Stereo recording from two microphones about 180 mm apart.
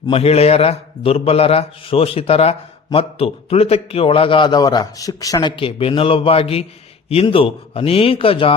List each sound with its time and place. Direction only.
0.1 s a man's voice: 35° left (ahead or behind)